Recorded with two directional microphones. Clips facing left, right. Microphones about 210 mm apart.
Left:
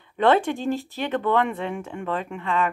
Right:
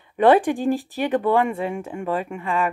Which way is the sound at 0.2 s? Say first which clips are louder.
Right 4 dB; 15° right (ahead or behind).